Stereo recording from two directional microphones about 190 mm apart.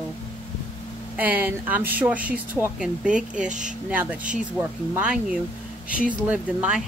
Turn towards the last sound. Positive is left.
turn(degrees=-5)  # may be behind; listen again after turning